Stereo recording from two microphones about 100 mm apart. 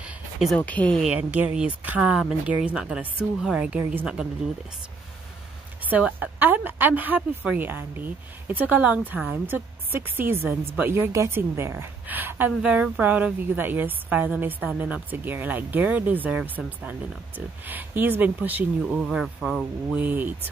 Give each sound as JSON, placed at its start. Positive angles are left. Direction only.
{"t": 0.6, "sound": "speech", "side_deg": 15}
{"t": 1.0, "sound": "a woman's voice", "side_deg": -15}
{"t": 5.9, "sound": "a woman's voice", "side_deg": -15}
{"t": 19.0, "sound": "speech", "side_deg": 0}
{"t": 20.0, "sound": "a woman's voice", "side_deg": -20}